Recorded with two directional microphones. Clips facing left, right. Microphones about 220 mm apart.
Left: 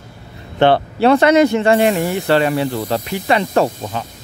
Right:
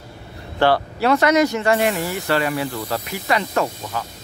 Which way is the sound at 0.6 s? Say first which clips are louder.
Left 5 dB; 25° left (ahead or behind).